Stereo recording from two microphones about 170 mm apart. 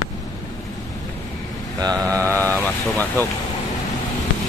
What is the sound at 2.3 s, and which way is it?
Speech, 10° left (ahead or behind).